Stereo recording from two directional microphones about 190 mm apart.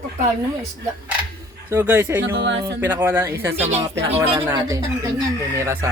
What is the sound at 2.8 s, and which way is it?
Speech, 10° right (ahead or behind).